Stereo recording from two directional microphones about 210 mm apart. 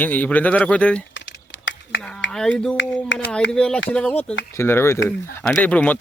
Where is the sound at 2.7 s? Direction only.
60° left (ahead or behind).